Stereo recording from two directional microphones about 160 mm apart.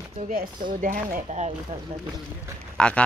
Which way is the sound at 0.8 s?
55° right (ahead or behind).